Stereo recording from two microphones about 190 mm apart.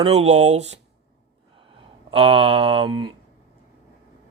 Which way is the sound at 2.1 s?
30° right (ahead or behind).